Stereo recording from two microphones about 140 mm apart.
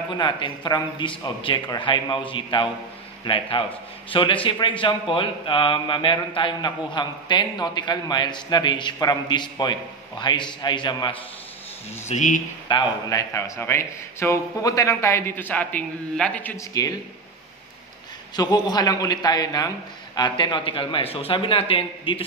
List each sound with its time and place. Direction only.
0.1 s a man's voice: 35° left (ahead or behind)
12.1 s speech: 60° left (ahead or behind)
12.6 s a man's voice: 25° left (ahead or behind); by 16.5 s 10° left (ahead or behind)
16.5 s a man's voice: 25° left (ahead or behind)
18.3 s a man's voice: 30° left (ahead or behind)